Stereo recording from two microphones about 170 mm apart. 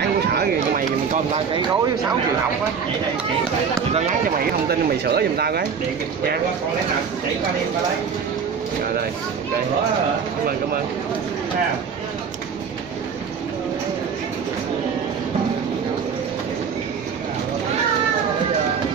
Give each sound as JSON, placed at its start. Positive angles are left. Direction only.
{"t": 0.3, "sound": "a sound", "side_deg": -70}
{"t": 3.9, "sound": "speech", "side_deg": -40}
{"t": 4.6, "sound": "speech", "side_deg": -70}